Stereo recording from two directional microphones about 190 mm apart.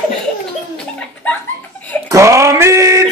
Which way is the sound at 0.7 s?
5° left (ahead or behind).